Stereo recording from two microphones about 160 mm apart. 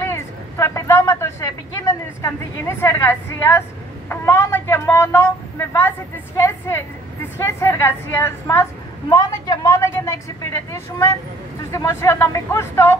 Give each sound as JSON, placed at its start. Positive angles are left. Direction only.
{"t": 0.0, "sound": "a sound", "side_deg": 15}
{"t": 4.1, "sound": "a woman's voice", "side_deg": 15}
{"t": 7.3, "sound": "a woman's voice", "side_deg": 15}